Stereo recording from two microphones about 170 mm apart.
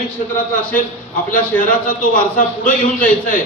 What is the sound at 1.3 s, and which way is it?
A man's voice, 55° left (ahead or behind).